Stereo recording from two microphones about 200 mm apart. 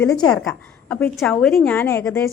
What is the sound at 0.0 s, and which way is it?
Speech, 15° left (ahead or behind).